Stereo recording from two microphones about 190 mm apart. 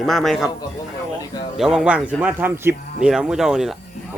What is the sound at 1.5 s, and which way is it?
Speech, 5° right (ahead or behind).